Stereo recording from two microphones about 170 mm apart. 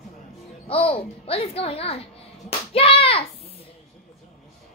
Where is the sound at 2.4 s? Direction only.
35° left (ahead or behind).